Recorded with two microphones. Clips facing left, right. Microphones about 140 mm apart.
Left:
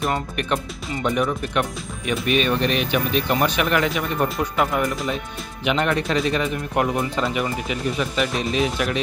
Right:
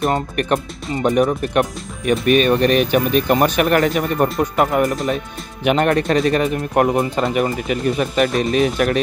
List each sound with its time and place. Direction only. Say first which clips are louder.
0.1 s speech: right 5 dB; 50° right (ahead or behind)